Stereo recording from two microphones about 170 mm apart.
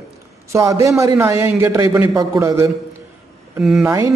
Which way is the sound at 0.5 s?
20° right (ahead or behind).